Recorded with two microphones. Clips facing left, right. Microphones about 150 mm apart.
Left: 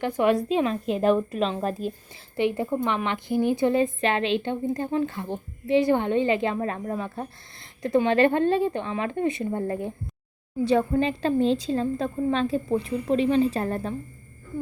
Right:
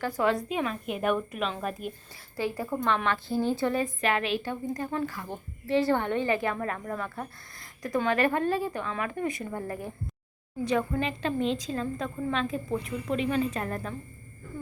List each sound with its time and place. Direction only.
0.0 s a woman's voice: 20° left (ahead or behind)